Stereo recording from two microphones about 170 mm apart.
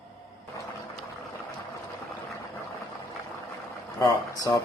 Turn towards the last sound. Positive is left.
turn(degrees=25)  # may be behind; listen again after turning